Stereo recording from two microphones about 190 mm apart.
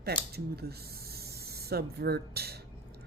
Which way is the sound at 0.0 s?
55° right (ahead or behind).